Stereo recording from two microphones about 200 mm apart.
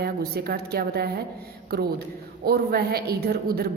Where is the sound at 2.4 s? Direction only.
50° right (ahead or behind).